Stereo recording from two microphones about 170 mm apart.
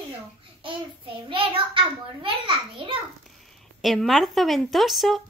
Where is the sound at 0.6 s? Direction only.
30° right (ahead or behind).